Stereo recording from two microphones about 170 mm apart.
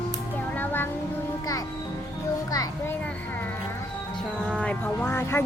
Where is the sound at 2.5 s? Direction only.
20° left (ahead or behind).